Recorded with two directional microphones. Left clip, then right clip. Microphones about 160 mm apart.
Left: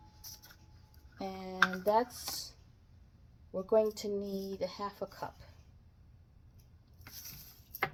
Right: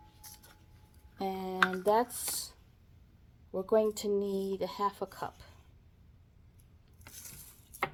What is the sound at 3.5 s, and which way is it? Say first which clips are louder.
Speech: right 1 dB; 40° right (ahead or behind).